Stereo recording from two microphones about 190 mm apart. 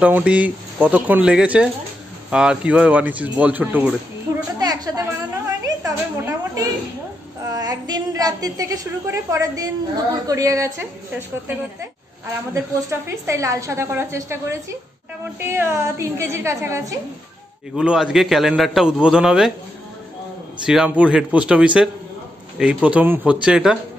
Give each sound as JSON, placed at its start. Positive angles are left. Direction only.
{"t": 0.0, "sound": "a woman's voice", "side_deg": -5}
{"t": 4.6, "sound": "a sound", "side_deg": -20}
{"t": 5.6, "sound": "a woman's voice", "side_deg": -15}
{"t": 17.7, "sound": "a man's voice", "side_deg": -5}
{"t": 20.6, "sound": "a man's voice", "side_deg": -5}